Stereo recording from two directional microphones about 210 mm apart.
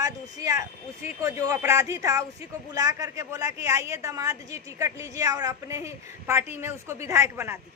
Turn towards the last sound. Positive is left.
turn(degrees=-10)  # may be behind; listen again after turning